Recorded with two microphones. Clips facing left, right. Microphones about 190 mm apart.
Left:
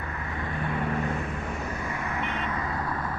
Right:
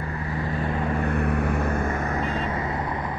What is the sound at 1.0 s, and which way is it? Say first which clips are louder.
Vehicle: right 7 dB; 65° right (ahead or behind).